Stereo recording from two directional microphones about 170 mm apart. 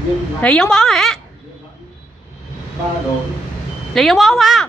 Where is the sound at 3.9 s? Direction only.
Centre (ahead or behind).